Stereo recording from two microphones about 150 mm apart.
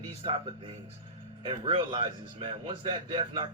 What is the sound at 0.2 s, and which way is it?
Speech, 40° right (ahead or behind).